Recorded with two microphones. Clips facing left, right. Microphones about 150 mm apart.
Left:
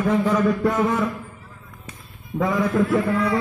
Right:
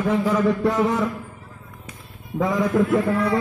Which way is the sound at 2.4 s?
15° right (ahead or behind).